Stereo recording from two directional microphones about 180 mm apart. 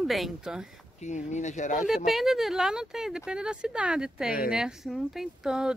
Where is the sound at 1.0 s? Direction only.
40° left (ahead or behind).